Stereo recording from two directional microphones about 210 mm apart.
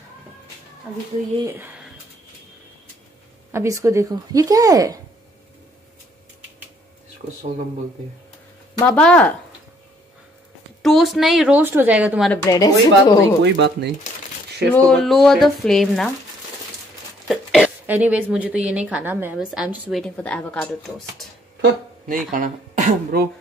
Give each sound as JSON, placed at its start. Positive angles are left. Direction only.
{"t": 1.4, "sound": "speech", "side_deg": -10}
{"t": 3.5, "sound": "speech", "side_deg": -15}
{"t": 8.7, "sound": "speech", "side_deg": 5}
{"t": 10.8, "sound": "a woman's voice", "side_deg": 0}
{"t": 12.4, "sound": "speech", "side_deg": 15}
{"t": 13.4, "sound": "speech", "side_deg": -55}
{"t": 14.7, "sound": "a woman's voice", "side_deg": 5}
{"t": 17.3, "sound": "a woman's voice", "side_deg": 0}
{"t": 21.5, "sound": "speech", "side_deg": -40}